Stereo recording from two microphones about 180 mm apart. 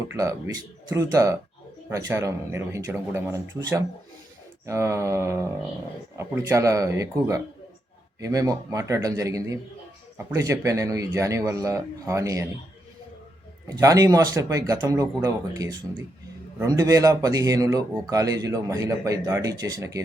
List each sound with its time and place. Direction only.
0.1 s a man's voice: 15° right (ahead or behind)
13.7 s speech: 20° right (ahead or behind)